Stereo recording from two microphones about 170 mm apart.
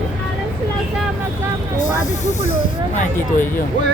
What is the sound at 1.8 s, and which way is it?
Speech, 45° left (ahead or behind).